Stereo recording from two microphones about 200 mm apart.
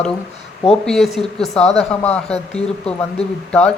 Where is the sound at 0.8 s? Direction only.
Centre (ahead or behind).